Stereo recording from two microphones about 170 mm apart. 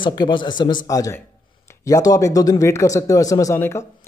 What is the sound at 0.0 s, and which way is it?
Speech, 25° left (ahead or behind).